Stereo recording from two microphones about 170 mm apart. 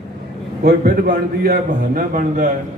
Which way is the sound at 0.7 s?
60° right (ahead or behind).